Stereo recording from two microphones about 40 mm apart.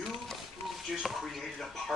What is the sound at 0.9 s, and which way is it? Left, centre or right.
Speech, centre.